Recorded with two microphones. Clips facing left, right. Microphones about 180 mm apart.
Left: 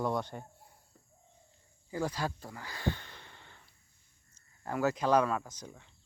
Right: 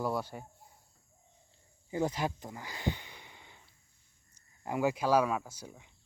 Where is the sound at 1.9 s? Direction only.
20° right (ahead or behind).